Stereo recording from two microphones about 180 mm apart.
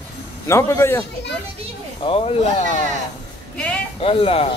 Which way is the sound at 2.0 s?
30° left (ahead or behind).